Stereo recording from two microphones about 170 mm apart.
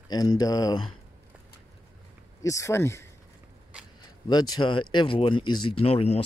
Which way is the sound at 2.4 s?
20° left (ahead or behind).